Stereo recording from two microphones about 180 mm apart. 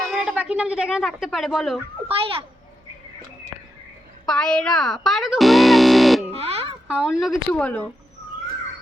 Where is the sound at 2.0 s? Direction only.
30° right (ahead or behind).